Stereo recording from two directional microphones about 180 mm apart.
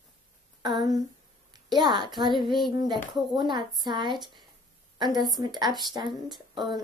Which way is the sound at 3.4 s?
25° right (ahead or behind).